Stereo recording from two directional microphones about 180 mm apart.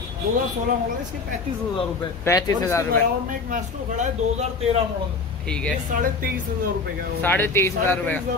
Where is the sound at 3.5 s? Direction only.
40° right (ahead or behind).